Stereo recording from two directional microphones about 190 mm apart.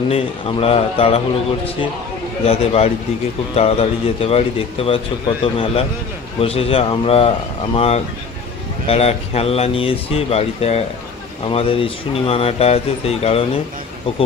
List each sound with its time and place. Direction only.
0.1 s a man's voice: 30° left (ahead or behind)
2.4 s a man's voice: 30° left (ahead or behind)